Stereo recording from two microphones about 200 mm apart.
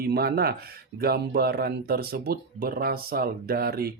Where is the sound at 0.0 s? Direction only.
50° right (ahead or behind).